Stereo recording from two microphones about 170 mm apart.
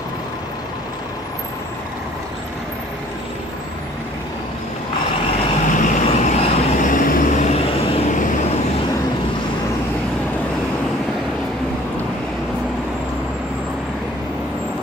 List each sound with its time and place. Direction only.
5.7 s vehicle: 50° left (ahead or behind)